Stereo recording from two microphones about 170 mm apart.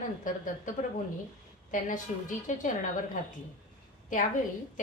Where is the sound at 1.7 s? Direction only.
50° left (ahead or behind).